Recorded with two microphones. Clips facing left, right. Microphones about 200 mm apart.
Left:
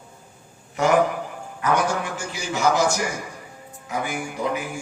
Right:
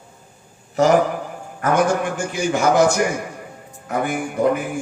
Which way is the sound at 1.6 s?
50° right (ahead or behind).